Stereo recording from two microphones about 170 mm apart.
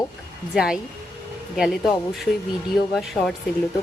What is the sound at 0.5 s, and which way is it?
Speech, 5° right (ahead or behind).